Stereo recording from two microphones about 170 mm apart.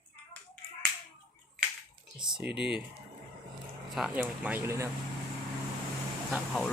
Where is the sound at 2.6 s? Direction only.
5° right (ahead or behind).